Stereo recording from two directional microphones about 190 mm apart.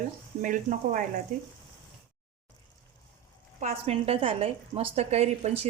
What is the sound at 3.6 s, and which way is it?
Speech, 35° right (ahead or behind).